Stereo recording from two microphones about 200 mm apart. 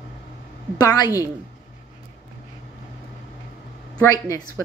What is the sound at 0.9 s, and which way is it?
Speech, 15° left (ahead or behind).